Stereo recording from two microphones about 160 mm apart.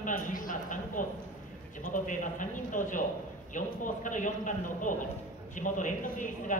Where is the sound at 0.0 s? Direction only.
55° left (ahead or behind).